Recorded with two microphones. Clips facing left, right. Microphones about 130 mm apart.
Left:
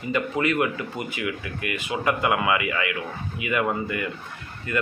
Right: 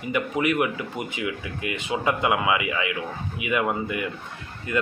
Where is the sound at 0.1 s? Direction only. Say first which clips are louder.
Even; 15° right (ahead or behind).